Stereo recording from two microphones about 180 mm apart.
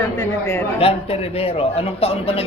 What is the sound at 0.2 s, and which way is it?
Speech, 20° left (ahead or behind).